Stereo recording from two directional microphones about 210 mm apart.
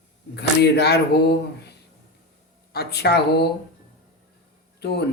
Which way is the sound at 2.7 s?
50° left (ahead or behind).